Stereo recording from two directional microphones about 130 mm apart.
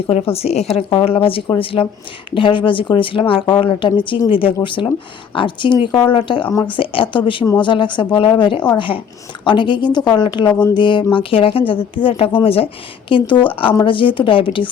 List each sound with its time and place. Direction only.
0.1 s a woman's voice: 50° left (ahead or behind)
0.9 s a woman's voice: 40° left (ahead or behind)